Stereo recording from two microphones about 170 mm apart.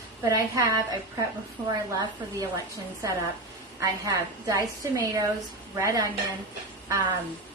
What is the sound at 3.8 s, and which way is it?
A woman's voice, 20° right (ahead or behind).